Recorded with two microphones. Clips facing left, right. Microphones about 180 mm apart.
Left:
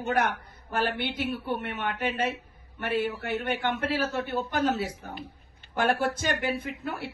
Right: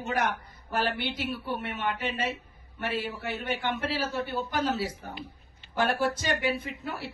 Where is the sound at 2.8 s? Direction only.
55° left (ahead or behind).